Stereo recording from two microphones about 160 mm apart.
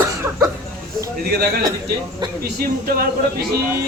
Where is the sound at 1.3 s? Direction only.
80° right.